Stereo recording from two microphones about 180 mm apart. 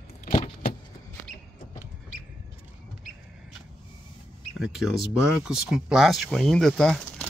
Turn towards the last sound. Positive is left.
turn(degrees=5)  # may be behind; listen again after turning